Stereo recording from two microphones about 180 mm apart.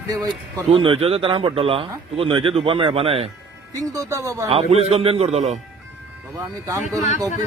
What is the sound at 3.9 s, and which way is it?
Speech, 15° right (ahead or behind).